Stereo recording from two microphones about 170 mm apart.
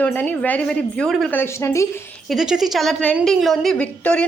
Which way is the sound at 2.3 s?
Centre (ahead or behind).